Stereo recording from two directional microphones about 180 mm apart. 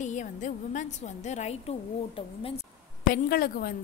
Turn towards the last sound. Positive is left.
turn(degrees=55)  # may be behind; listen again after turning